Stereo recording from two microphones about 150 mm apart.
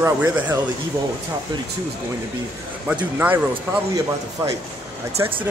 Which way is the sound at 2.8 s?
10° right (ahead or behind).